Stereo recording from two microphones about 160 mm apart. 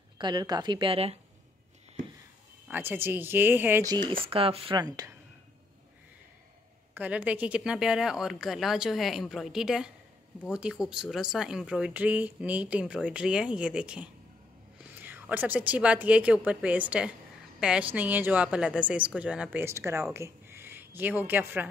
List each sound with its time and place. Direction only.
0.2 s speech: 25° right (ahead or behind)
2.7 s speech: 15° right (ahead or behind)
3.8 s speech: 25° right (ahead or behind)
6.9 s speech: 10° right (ahead or behind)
15.0 s a sound: 10° right (ahead or behind)
15.7 s speech: 10° right (ahead or behind)
19.6 s speech: 15° right (ahead or behind)